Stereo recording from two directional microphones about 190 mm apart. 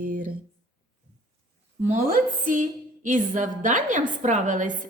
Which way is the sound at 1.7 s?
40° right (ahead or behind).